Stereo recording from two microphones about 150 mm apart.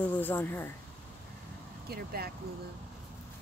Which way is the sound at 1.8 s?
90° right.